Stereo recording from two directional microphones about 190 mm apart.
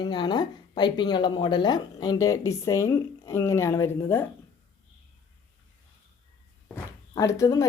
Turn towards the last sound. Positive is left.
turn(degrees=15)  # may be behind; listen again after turning